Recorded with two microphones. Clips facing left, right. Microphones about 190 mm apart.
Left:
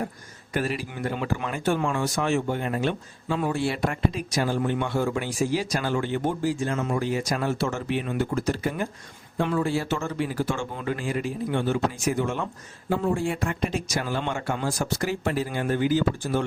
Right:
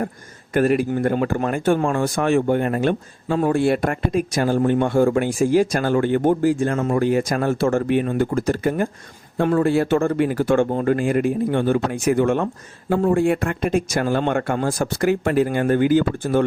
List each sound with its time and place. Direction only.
0.5 s speech: 55° right (ahead or behind)
10.7 s speech: 45° right (ahead or behind)